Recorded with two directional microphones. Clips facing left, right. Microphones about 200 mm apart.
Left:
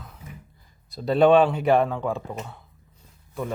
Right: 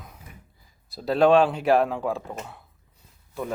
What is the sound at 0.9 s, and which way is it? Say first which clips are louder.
Speech: left 1 dB; centre (ahead or behind).